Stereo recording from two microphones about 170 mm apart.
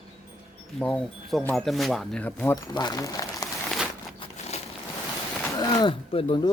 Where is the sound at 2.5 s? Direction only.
25° left (ahead or behind).